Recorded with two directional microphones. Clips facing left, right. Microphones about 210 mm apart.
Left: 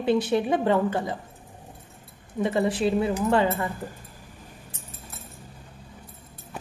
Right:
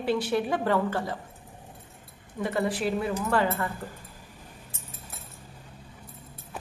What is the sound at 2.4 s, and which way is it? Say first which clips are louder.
Speech: left 4 dB; 20° left (ahead or behind).